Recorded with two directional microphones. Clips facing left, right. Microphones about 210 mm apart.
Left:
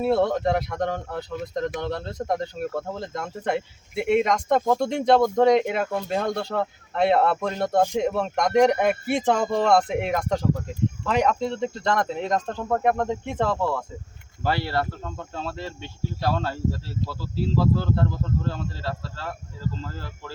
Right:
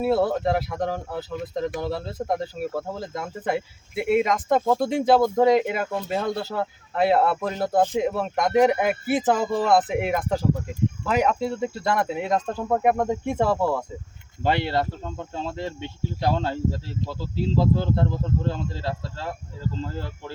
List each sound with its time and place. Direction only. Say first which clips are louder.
0.0 s speech: even; 5° right (ahead or behind); by 20.3 s 20° right (ahead or behind)